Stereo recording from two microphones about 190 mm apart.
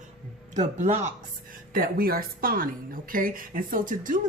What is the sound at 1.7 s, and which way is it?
A woman's voice, 50° right (ahead or behind).